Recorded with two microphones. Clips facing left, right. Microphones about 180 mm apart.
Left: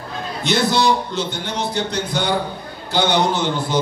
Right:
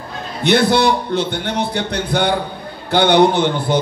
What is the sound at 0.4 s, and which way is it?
A man's voice, 60° right (ahead or behind).